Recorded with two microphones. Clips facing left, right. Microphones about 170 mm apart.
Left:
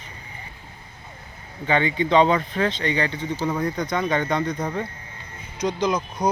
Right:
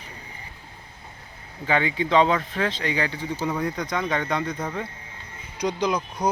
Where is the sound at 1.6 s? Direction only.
5° right (ahead or behind).